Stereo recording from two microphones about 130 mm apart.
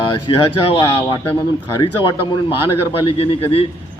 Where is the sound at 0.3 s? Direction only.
45° left (ahead or behind).